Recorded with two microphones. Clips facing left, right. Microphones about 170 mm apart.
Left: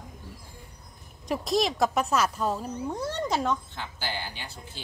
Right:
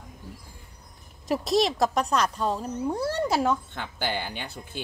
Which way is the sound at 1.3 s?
Centre (ahead or behind).